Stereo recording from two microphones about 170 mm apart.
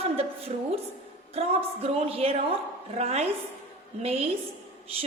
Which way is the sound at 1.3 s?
35° right (ahead or behind).